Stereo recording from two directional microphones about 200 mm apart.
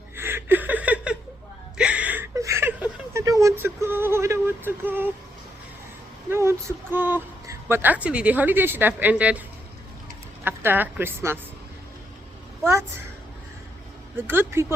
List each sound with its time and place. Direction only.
0.2 s a sound: 10° right (ahead or behind)
6.3 s a woman's voice: 15° right (ahead or behind)
10.4 s a woman's voice: 10° right (ahead or behind)
14.2 s a woman's voice: 10° right (ahead or behind)